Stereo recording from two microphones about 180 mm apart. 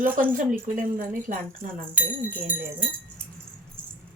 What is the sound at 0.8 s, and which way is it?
Speech, 50° right (ahead or behind).